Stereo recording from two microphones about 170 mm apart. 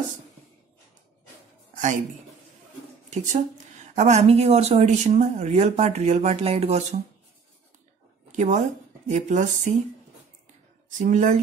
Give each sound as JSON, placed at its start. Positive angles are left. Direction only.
{"t": 3.1, "sound": "a woman's voice", "side_deg": -45}
{"t": 8.3, "sound": "speech", "side_deg": -45}
{"t": 10.9, "sound": "speech", "side_deg": -45}